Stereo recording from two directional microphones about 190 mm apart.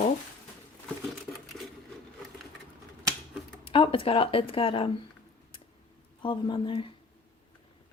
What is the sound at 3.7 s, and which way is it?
Speech, 30° left (ahead or behind).